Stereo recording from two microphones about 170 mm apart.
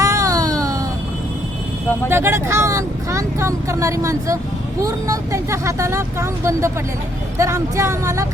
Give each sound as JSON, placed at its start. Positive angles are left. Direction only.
{"t": 0.0, "sound": "baby cry", "side_deg": -20}
{"t": 2.0, "sound": "speech", "side_deg": -15}